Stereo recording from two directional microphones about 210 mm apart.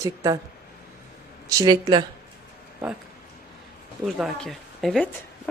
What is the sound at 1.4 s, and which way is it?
Speech, 20° right (ahead or behind).